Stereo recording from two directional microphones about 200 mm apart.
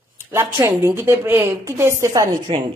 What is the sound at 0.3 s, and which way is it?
Speech, 15° right (ahead or behind).